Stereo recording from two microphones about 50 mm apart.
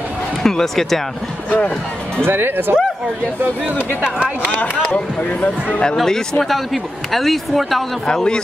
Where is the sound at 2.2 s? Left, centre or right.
Right.